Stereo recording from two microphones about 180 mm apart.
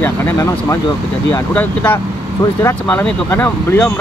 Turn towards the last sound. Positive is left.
turn(degrees=10)  # may be behind; listen again after turning